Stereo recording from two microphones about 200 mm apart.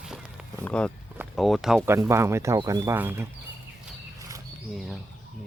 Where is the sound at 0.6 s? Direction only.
5° left (ahead or behind).